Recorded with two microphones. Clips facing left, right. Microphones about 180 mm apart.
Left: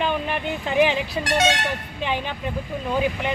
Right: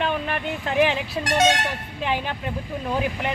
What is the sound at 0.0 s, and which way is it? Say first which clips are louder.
Speech: left 1 dB; centre (ahead or behind).